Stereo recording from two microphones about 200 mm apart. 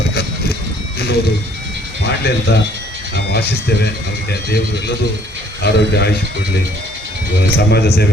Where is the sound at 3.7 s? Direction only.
55° left (ahead or behind).